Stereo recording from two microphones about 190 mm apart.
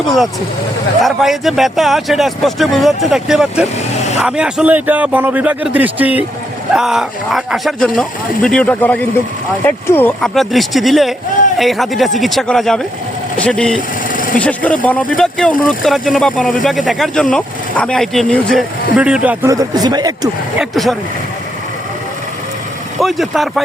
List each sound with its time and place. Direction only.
0.0 s speech: centre (ahead or behind)
3.9 s vehicle: 35° left (ahead or behind)
4.2 s speech: 5° right (ahead or behind)
14.1 s vehicle: 45° left (ahead or behind)
14.3 s speech: 5° left (ahead or behind); by 20.3 s 20° right (ahead or behind)
20.6 s speech: centre (ahead or behind)
23.0 s speech: centre (ahead or behind)